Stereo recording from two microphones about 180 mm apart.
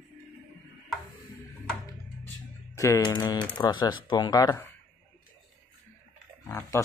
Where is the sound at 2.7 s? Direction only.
15° left (ahead or behind).